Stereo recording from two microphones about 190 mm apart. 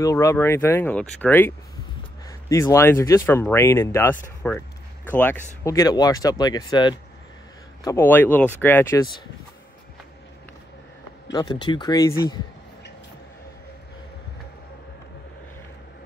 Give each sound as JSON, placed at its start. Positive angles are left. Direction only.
{"t": 0.0, "sound": "speech", "side_deg": 15}
{"t": 2.5, "sound": "speech", "side_deg": 15}
{"t": 7.8, "sound": "speech", "side_deg": 10}
{"t": 11.3, "sound": "speech", "side_deg": 25}